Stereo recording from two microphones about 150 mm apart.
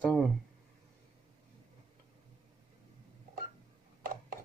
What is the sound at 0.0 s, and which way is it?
Speech, 10° left (ahead or behind).